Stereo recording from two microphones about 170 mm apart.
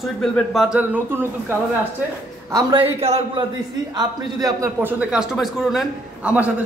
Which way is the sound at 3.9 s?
20° right (ahead or behind).